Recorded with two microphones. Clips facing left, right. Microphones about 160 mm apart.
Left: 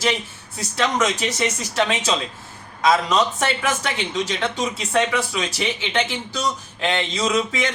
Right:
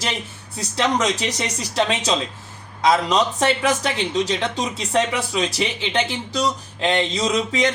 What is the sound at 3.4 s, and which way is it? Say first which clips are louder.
Speech: right 3 dB; 35° right (ahead or behind).